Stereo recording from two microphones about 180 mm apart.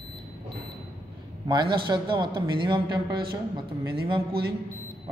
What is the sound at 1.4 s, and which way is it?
A man's voice, 25° right (ahead or behind).